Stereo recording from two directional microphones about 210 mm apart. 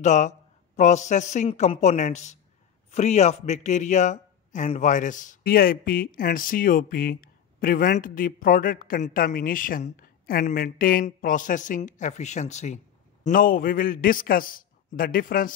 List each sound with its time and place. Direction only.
0.0 s speech: 35° left (ahead or behind)